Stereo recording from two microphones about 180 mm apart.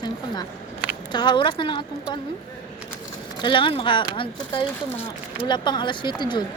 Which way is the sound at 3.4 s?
25° left (ahead or behind).